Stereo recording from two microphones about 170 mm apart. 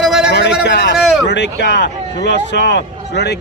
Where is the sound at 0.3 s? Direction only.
85° left.